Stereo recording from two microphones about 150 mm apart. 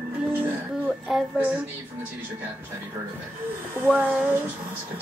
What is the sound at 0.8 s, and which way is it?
Speech, 10° right (ahead or behind).